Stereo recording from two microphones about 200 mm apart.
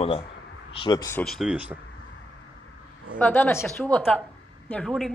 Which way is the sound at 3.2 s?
10° left (ahead or behind).